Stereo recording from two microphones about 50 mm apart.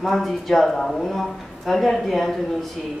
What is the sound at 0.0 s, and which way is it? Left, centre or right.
Speech, centre.